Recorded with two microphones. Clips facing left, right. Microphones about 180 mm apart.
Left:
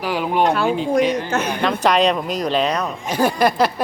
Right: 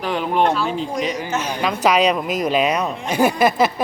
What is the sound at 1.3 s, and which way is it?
Speech, 60° left (ahead or behind).